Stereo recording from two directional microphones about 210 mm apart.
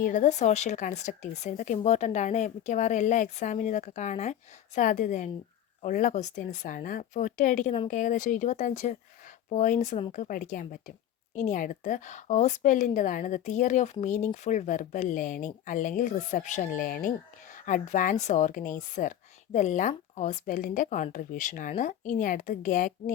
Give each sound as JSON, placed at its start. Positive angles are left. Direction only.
{"t": 0.0, "sound": "speech", "side_deg": 35}